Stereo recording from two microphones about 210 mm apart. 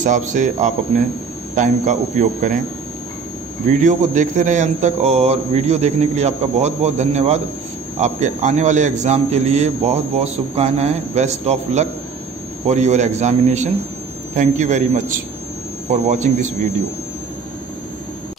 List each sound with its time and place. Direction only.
0.0 s speech: 35° right (ahead or behind)
3.8 s speech: 35° right (ahead or behind)